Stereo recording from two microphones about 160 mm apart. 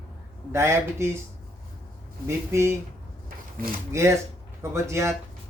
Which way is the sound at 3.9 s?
15° right (ahead or behind).